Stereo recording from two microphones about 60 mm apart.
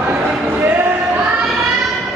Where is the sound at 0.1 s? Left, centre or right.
Right.